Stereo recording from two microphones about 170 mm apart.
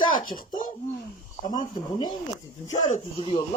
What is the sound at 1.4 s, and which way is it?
Speech, 25° left (ahead or behind).